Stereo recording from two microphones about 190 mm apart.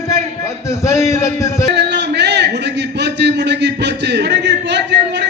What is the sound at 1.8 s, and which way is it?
A man's voice, 65° right (ahead or behind).